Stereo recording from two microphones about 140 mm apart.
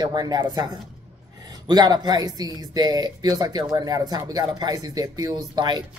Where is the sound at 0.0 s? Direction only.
30° right (ahead or behind).